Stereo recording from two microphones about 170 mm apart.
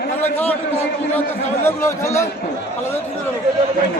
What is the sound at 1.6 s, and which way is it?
Speech, 15° left (ahead or behind).